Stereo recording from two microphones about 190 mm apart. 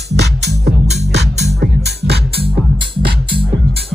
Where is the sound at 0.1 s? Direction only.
65° right (ahead or behind).